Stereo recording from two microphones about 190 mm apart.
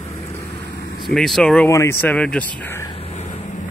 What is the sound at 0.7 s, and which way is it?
Vehicle, 55° left (ahead or behind).